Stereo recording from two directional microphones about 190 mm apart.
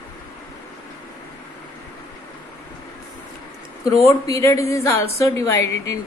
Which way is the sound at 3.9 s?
15° left (ahead or behind).